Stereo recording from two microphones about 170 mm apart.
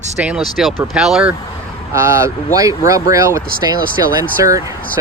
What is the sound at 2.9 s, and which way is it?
Speech, 20° right (ahead or behind).